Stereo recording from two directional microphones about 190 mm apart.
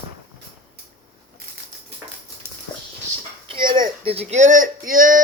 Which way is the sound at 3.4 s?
25° right (ahead or behind).